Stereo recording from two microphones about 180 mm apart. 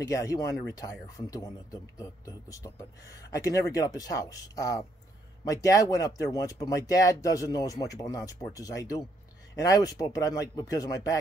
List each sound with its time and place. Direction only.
0.1 s speech: 20° left (ahead or behind)